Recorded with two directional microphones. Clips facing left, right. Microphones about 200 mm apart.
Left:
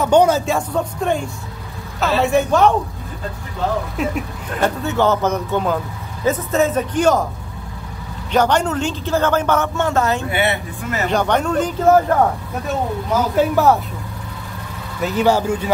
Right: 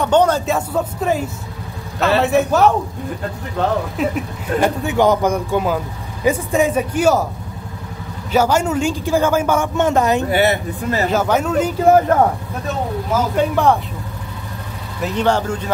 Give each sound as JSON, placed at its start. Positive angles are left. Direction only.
{"t": 0.0, "sound": "speech", "side_deg": 10}
{"t": 0.5, "sound": "speech", "side_deg": -5}
{"t": 3.6, "sound": "speech", "side_deg": -65}
{"t": 3.9, "sound": "speech", "side_deg": 0}
{"t": 4.6, "sound": "a man's voice", "side_deg": -15}
{"t": 8.3, "sound": "a man's voice", "side_deg": -5}
{"t": 10.3, "sound": "speech", "side_deg": -40}
{"t": 11.1, "sound": "speech", "side_deg": -5}
{"t": 13.4, "sound": "speech", "side_deg": 5}
{"t": 15.0, "sound": "speech", "side_deg": 5}